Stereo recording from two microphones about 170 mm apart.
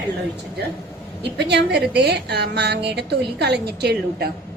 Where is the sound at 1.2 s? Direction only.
80° right.